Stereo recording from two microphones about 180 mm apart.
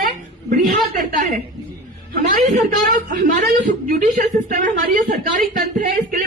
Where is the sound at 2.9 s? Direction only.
45° right (ahead or behind).